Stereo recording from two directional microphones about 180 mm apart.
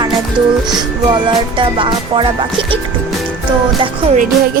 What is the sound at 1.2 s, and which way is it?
Music, 30° right (ahead or behind).